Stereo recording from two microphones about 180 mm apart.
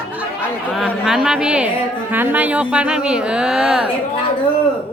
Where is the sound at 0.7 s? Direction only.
Centre (ahead or behind).